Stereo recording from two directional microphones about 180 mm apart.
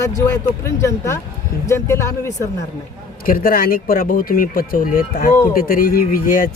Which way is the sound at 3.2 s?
55° left (ahead or behind).